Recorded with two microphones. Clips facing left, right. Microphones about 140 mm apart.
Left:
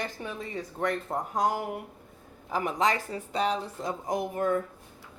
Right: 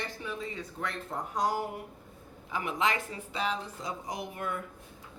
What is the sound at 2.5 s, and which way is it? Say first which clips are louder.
Speech: left 4 dB; 40° left (ahead or behind).